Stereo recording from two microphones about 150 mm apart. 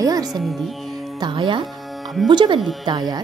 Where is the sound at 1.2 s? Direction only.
35° right (ahead or behind).